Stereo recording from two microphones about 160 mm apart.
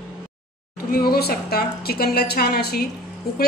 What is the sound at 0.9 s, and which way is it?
A woman's voice, 70° left (ahead or behind).